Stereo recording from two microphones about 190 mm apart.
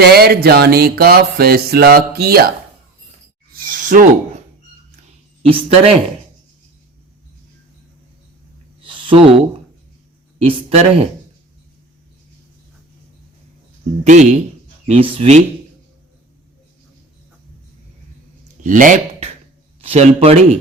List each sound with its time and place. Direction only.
0.0 s music: 55° right (ahead or behind)
3.5 s a sound: 45° right (ahead or behind)
5.4 s speech: 30° right (ahead or behind)
8.8 s a sound: 25° right (ahead or behind)
10.4 s speech: 30° right (ahead or behind)
14.0 s speech: 40° right (ahead or behind)
14.8 s speech: 30° right (ahead or behind)
18.6 s speech: 45° right (ahead or behind)
19.8 s speech: 30° right (ahead or behind)